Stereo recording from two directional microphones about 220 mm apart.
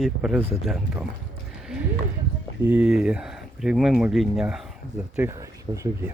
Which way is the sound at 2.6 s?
5° right (ahead or behind).